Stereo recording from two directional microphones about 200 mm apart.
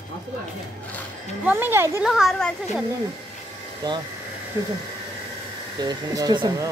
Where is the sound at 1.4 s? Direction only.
10° right (ahead or behind).